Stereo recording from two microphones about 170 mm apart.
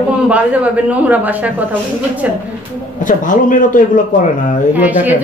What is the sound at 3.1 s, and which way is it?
Speech, 50° left (ahead or behind).